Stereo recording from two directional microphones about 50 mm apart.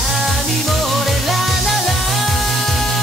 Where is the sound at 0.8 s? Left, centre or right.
Centre.